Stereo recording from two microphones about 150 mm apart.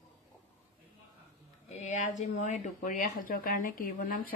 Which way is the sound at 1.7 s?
50° left (ahead or behind).